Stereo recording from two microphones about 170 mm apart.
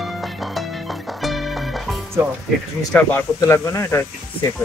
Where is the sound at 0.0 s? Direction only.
Centre (ahead or behind).